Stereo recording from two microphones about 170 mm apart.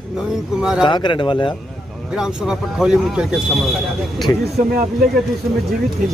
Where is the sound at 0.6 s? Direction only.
5° right (ahead or behind).